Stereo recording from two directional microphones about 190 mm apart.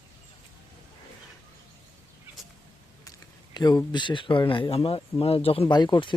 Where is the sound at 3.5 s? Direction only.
20° left (ahead or behind).